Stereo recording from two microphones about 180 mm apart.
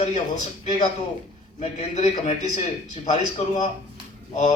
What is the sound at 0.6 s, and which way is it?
A man's voice, 40° left (ahead or behind).